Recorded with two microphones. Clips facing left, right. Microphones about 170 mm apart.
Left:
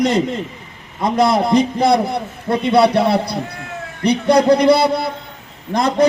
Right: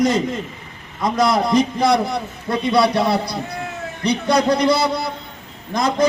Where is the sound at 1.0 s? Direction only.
25° left (ahead or behind).